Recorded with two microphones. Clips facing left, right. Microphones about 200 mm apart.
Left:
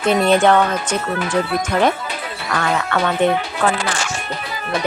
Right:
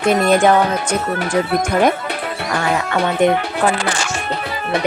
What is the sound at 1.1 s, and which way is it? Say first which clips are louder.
Speech: right 2 dB; 50° right (ahead or behind).